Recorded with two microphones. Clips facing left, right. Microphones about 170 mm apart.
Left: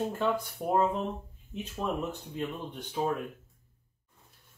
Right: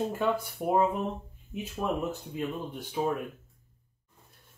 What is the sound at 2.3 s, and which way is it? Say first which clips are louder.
Speech: right 2 dB; 5° right (ahead or behind).